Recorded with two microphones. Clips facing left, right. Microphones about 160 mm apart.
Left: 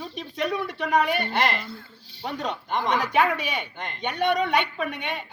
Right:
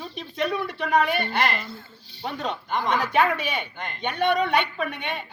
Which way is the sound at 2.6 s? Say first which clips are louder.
Even; 25° left (ahead or behind).